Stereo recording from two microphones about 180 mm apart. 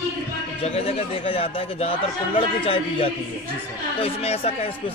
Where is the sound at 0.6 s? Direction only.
35° left (ahead or behind).